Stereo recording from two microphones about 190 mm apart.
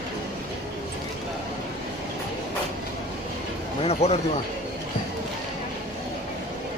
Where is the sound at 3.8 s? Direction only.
35° left (ahead or behind).